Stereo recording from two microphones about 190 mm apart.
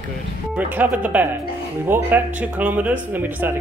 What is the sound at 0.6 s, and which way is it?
Speech, 10° right (ahead or behind).